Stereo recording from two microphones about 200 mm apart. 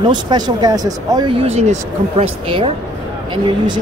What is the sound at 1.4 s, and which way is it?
Speech, 30° right (ahead or behind).